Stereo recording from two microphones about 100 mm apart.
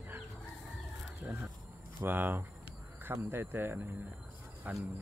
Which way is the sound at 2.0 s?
20° right (ahead or behind).